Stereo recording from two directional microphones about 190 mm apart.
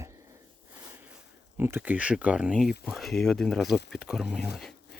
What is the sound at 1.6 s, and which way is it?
Speech, 10° right (ahead or behind).